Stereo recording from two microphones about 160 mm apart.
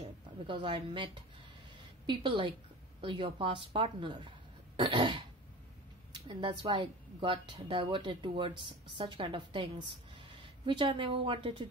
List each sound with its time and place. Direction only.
0.5 s a woman's voice: 30° right (ahead or behind)